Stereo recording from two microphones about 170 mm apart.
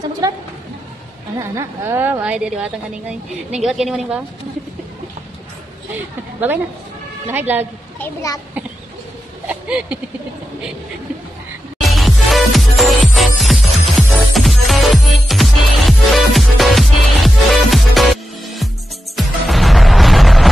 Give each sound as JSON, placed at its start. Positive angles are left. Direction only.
{"t": 0.2, "sound": "a woman's voice", "side_deg": -20}
{"t": 1.4, "sound": "a woman's voice", "side_deg": -15}
{"t": 7.2, "sound": "a woman's voice", "side_deg": -10}
{"t": 8.0, "sound": "a child's voice", "side_deg": 20}
{"t": 9.5, "sound": "speech", "side_deg": -10}
{"t": 11.9, "sound": "music", "side_deg": 0}
{"t": 19.1, "sound": "music", "side_deg": 0}